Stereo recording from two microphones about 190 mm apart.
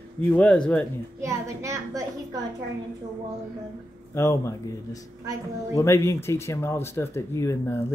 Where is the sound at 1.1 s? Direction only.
15° right (ahead or behind).